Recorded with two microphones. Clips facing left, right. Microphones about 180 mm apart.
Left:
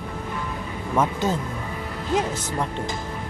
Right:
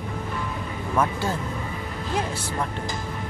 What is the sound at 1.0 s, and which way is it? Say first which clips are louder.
Speech: left 2 dB; 20° left (ahead or behind).